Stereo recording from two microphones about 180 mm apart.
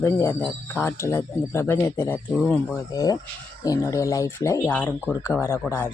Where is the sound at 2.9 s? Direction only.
20° left (ahead or behind).